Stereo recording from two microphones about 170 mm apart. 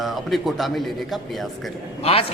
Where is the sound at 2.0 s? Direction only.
35° left (ahead or behind).